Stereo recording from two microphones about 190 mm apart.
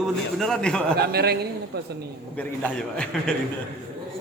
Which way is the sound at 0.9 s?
55° right (ahead or behind).